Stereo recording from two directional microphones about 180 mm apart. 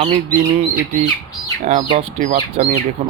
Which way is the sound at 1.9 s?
35° right (ahead or behind).